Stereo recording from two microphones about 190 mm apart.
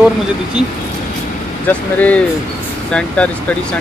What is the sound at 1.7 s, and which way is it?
Speech, 5° left (ahead or behind).